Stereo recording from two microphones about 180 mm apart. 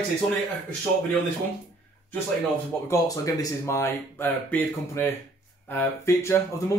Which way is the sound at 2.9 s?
15° left (ahead or behind).